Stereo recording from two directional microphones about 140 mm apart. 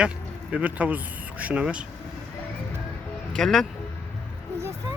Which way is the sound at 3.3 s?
5° left (ahead or behind).